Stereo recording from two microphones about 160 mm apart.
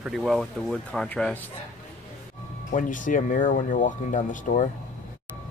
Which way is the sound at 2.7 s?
55° left (ahead or behind).